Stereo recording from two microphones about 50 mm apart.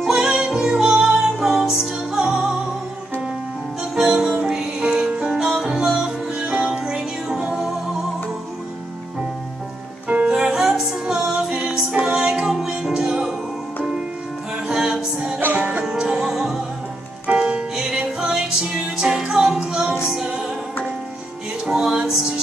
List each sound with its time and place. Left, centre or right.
0.0 s music: centre
3.9 s music: centre
10.3 s music: centre
14.7 s music: centre
15.5 s music: right
15.8 s music: centre
21.6 s music: centre